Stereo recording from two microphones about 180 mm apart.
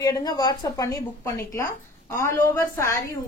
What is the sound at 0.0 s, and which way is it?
A woman's voice, 20° left (ahead or behind).